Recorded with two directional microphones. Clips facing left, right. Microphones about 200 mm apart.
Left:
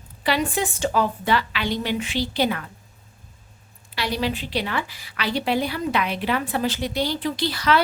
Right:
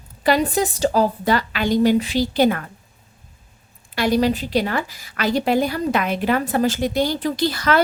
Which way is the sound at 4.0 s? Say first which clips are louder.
Right 7 dB; 45° right (ahead or behind).